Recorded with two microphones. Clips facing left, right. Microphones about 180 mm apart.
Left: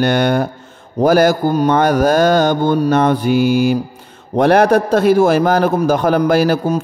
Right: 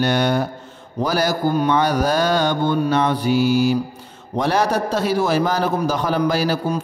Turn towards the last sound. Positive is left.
turn(degrees=55)  # may be behind; listen again after turning